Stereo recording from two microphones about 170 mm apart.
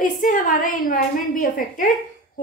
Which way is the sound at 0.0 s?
55° left (ahead or behind).